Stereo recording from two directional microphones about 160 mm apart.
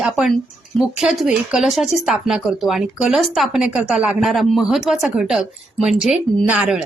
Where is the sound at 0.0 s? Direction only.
Centre (ahead or behind).